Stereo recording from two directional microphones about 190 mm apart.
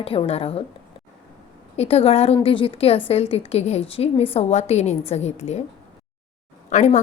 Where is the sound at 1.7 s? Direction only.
30° left (ahead or behind).